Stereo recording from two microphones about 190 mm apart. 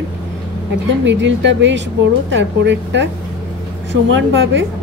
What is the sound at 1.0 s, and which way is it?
A woman's voice, 70° right (ahead or behind).